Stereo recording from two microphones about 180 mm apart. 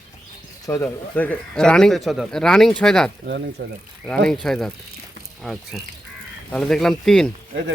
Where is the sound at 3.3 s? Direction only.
70° right (ahead or behind).